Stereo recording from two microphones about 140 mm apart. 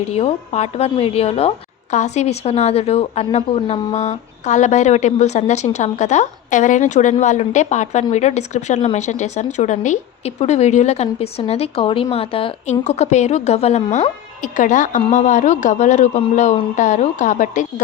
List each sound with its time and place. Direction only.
0.1 s a woman's voice: 45° left (ahead or behind)
12.8 s a woman's voice: 50° left (ahead or behind)